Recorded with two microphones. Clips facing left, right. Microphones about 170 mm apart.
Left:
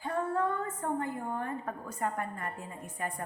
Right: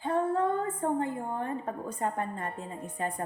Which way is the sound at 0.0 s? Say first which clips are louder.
Right 4 dB; 25° right (ahead or behind).